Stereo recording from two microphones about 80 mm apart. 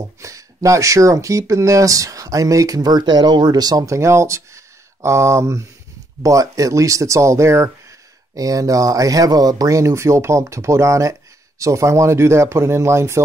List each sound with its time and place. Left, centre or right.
0.2 s speech: right